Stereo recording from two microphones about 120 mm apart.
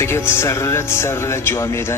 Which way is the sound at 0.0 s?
20° left (ahead or behind).